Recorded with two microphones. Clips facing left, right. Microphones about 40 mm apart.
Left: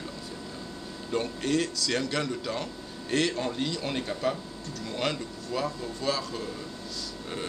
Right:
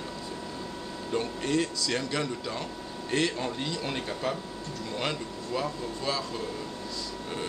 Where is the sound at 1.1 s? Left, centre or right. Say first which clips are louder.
Left 1 dB; centre.